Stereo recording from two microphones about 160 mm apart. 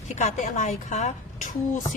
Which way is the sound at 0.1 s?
45° left (ahead or behind).